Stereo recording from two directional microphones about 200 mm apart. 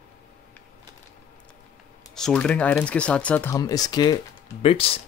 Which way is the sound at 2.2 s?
5° left (ahead or behind).